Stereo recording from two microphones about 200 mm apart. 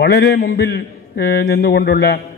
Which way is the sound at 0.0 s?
55° left (ahead or behind).